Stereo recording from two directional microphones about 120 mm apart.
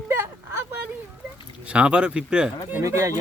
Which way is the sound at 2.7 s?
25° right (ahead or behind).